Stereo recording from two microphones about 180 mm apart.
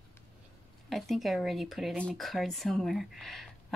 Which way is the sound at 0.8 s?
Centre (ahead or behind).